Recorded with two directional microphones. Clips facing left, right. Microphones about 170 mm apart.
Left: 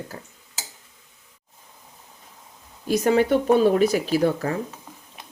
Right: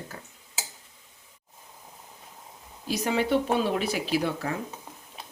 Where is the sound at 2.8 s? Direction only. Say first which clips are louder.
Left 7 dB; 50° left (ahead or behind).